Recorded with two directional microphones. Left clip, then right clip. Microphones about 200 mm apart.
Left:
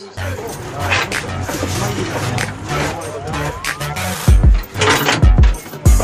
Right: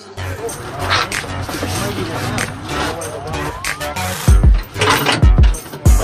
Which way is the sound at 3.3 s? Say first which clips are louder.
Left 1 dB; centre (ahead or behind).